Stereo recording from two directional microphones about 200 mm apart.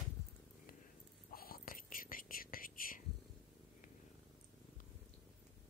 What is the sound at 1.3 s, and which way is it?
Whispering, 45° left (ahead or behind).